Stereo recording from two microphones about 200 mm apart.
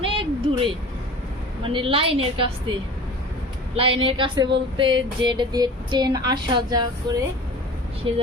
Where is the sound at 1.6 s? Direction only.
25° right (ahead or behind).